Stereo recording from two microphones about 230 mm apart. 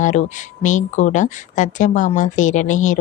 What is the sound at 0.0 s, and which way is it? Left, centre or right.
Speech, left.